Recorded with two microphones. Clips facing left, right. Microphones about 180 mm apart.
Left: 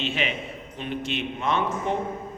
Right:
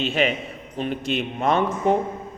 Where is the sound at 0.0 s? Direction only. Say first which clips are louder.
Right 6 dB; 40° right (ahead or behind).